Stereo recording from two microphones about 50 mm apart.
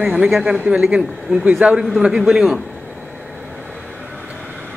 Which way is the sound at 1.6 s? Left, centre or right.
Right.